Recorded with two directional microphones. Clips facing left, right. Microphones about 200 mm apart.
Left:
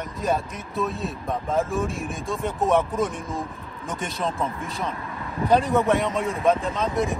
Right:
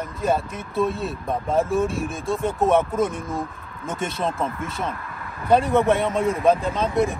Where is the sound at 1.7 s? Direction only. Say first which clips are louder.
Right 4 dB; centre (ahead or behind).